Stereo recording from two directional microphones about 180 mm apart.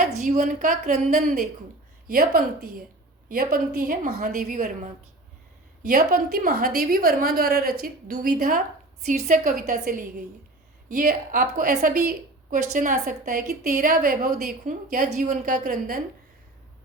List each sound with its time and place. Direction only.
0.2 s a woman's voice: 40° right (ahead or behind)
2.0 s a woman's voice: 55° right (ahead or behind)
5.9 s a woman's voice: 55° right (ahead or behind)
14.2 s a woman's voice: 45° right (ahead or behind)